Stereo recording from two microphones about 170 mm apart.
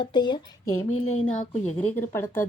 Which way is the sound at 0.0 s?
25° left (ahead or behind).